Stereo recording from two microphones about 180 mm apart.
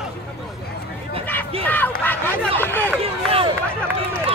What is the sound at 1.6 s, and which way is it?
Crowd, 10° left (ahead or behind).